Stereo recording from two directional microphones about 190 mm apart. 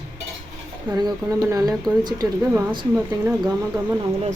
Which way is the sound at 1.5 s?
20° right (ahead or behind).